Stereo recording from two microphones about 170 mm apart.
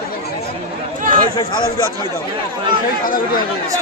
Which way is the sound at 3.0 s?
55° left (ahead or behind).